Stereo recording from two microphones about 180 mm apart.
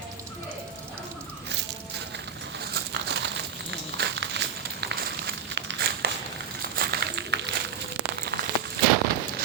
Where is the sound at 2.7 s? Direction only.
70° right (ahead or behind).